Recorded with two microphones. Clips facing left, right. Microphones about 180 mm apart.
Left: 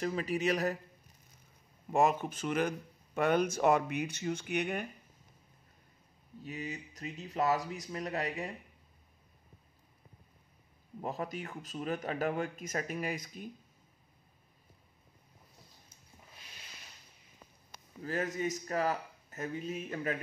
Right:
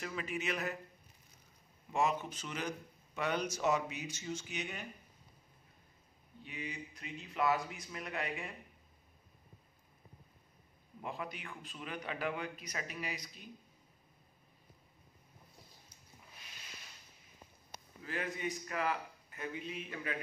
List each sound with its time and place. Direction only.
0.0 s speech: 35° left (ahead or behind)
1.9 s speech: 50° left (ahead or behind)
6.4 s speech: 40° left (ahead or behind)
11.0 s speech: 40° left (ahead or behind)
18.0 s speech: 40° left (ahead or behind)